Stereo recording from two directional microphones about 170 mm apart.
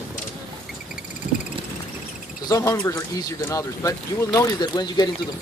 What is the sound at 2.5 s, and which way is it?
Speech, 20° left (ahead or behind).